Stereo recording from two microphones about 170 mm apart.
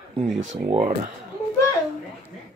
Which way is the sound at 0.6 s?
30° right (ahead or behind).